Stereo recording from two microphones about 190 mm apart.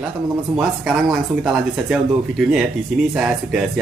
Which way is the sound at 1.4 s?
5° right (ahead or behind).